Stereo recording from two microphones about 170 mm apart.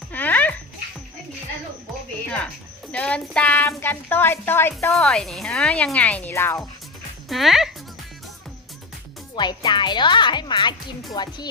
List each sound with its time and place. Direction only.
0.1 s a sound: 10° left (ahead or behind)
2.9 s speech: 5° left (ahead or behind)
7.3 s speech: centre (ahead or behind)
9.3 s speech: 25° left (ahead or behind)